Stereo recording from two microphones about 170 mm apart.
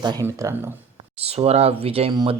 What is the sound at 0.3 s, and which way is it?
Speech, 15° right (ahead or behind).